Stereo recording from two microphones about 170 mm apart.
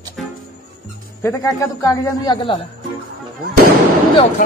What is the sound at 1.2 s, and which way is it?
A man's voice, 20° left (ahead or behind).